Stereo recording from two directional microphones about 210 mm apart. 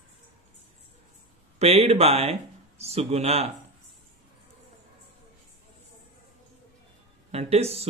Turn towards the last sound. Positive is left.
turn(degrees=-30)  # may be behind; listen again after turning